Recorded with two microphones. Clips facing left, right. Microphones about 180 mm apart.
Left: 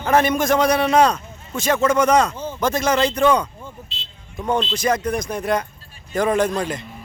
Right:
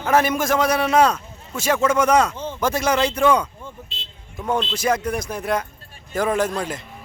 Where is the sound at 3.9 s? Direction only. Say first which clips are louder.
Even; 50° right (ahead or behind).